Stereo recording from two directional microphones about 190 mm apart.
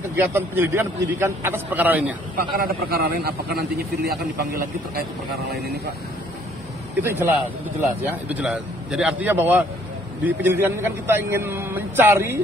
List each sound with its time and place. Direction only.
0.1 s a man's voice: 10° right (ahead or behind)
2.6 s a man's voice: 55° right (ahead or behind)
7.0 s a man's voice: 10° right (ahead or behind)